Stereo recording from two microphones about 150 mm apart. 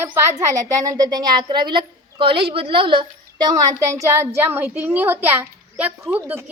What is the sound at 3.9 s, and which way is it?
A child's voice, 20° right (ahead or behind).